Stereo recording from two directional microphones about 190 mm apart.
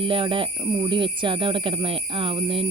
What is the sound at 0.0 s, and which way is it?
Speech, 30° right (ahead or behind).